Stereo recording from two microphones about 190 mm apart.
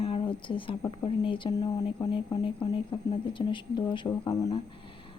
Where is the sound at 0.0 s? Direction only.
25° left (ahead or behind).